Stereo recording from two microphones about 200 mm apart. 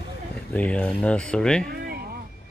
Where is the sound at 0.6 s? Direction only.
5° left (ahead or behind).